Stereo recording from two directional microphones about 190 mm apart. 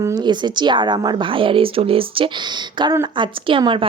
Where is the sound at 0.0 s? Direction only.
20° right (ahead or behind).